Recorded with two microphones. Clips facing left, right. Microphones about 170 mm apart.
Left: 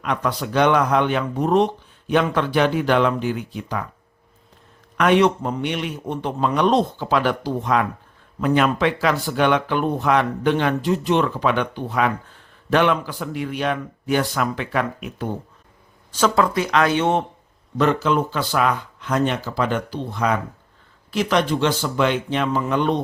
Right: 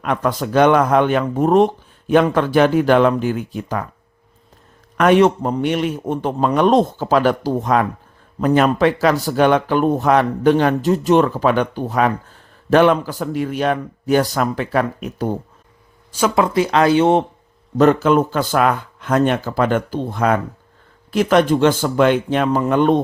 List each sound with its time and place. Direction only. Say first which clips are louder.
0.0 s speech: right 4 dB; 50° right (ahead or behind)
4.9 s speech: right 4 dB; 45° right (ahead or behind)
16.1 s speech: right 1 dB; 10° right (ahead or behind)
16.4 s speech: right 5 dB; 30° right (ahead or behind)
17.7 s speech: right 6 dB; 50° right (ahead or behind)